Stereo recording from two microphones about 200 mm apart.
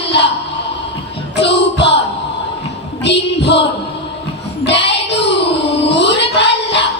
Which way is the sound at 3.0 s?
60° left (ahead or behind).